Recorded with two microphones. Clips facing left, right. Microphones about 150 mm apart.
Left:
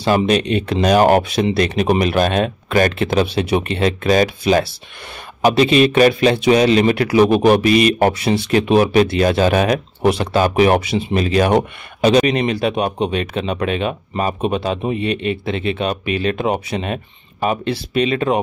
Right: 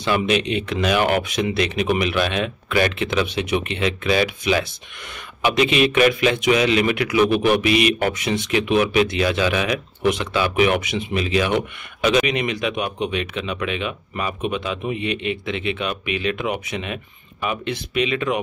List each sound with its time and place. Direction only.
0.0 s a man's voice: 40° left (ahead or behind)